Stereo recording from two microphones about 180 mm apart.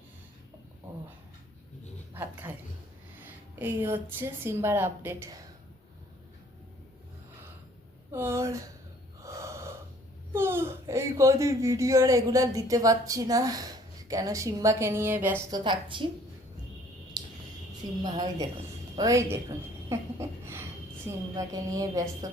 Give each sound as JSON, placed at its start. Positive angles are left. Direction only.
{"t": 2.1, "sound": "a woman's voice", "side_deg": -10}
{"t": 8.1, "sound": "speech", "side_deg": -15}
{"t": 9.2, "sound": "gasp", "side_deg": -15}
{"t": 10.3, "sound": "speech", "side_deg": -15}
{"t": 15.4, "sound": "a woman's voice", "side_deg": -25}
{"t": 18.0, "sound": "a woman's voice", "side_deg": -20}